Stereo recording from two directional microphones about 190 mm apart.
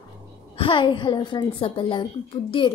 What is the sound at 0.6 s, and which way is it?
A woman's voice, 25° left (ahead or behind).